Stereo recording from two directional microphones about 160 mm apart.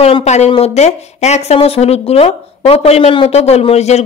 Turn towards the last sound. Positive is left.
turn(degrees=45)  # may be behind; listen again after turning